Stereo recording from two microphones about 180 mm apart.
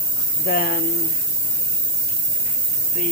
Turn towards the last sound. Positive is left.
turn(degrees=50)  # may be behind; listen again after turning